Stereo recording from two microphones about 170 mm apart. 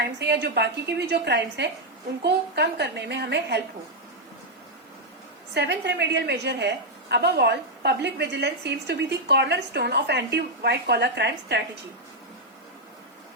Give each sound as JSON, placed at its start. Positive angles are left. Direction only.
{"t": 0.0, "sound": "a woman's voice", "side_deg": -80}
{"t": 5.5, "sound": "a woman's voice", "side_deg": -85}